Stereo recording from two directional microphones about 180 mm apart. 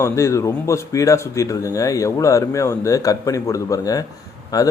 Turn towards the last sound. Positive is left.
turn(degrees=20)  # may be behind; listen again after turning